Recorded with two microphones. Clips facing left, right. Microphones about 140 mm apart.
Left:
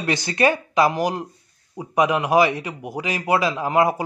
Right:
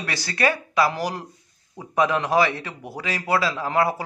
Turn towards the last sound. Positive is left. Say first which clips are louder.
# left 3 dB
turn(degrees=15)  # may be behind; listen again after turning